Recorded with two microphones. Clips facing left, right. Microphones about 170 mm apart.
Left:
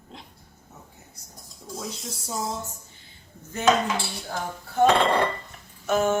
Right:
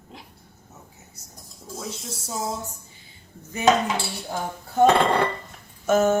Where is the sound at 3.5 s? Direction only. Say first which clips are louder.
Right 2 dB; 10° right (ahead or behind).